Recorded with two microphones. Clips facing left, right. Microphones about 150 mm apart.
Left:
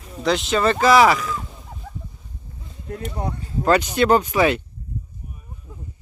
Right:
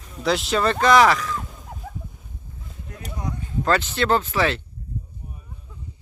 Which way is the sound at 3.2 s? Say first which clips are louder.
Right 1 dB; 30° left (ahead or behind).